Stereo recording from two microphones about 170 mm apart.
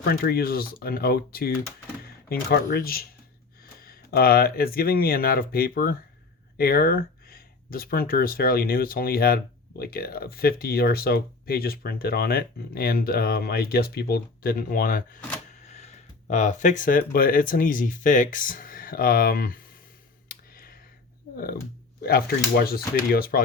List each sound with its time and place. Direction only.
0.0 s speech: 65° left (ahead or behind)
15.6 s speech: 40° left (ahead or behind); by 19.6 s 60° left (ahead or behind)
20.2 s a sound: 60° left (ahead or behind)
22.0 s speech: 65° left (ahead or behind)